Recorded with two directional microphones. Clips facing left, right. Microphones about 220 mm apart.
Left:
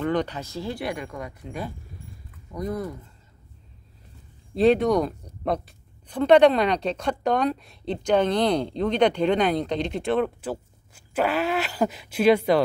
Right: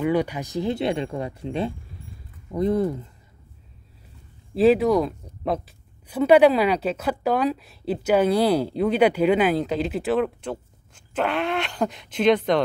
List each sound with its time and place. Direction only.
0.0 s speech: 10° right (ahead or behind); by 3.0 s 30° right (ahead or behind)
4.6 s a woman's voice: 5° right (ahead or behind)